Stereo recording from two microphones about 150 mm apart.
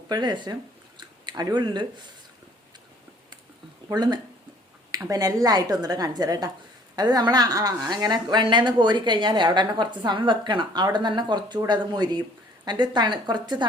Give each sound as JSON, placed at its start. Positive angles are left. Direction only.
{"t": 0.1, "sound": "a woman's voice", "side_deg": -30}
{"t": 3.8, "sound": "a woman's voice", "side_deg": -30}